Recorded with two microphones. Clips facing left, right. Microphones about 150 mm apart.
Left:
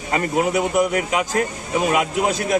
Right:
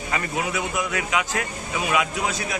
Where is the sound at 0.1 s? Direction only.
40° left (ahead or behind).